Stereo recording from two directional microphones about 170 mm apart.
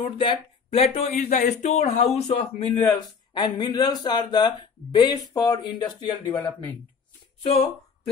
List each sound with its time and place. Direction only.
0.0 s speech: 30° left (ahead or behind)
2.9 s speech: 25° left (ahead or behind)
6.2 s speech: 10° left (ahead or behind)